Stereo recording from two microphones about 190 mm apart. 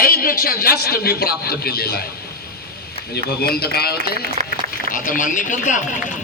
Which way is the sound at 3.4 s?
55° left (ahead or behind).